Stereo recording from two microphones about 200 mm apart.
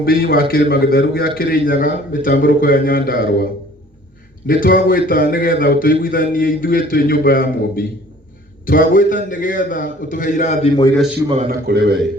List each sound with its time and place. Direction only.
0.0 s a man's voice: 50° left (ahead or behind)
4.4 s a man's voice: 45° left (ahead or behind)
11.4 s speech: 55° right (ahead or behind)